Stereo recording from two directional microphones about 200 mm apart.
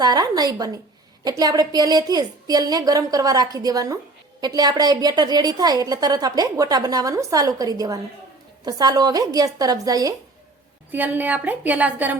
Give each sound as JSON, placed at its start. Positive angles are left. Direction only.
{"t": 0.0, "sound": "a woman's voice", "side_deg": -20}